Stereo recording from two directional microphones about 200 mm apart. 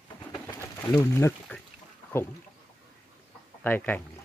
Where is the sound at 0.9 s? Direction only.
15° left (ahead or behind).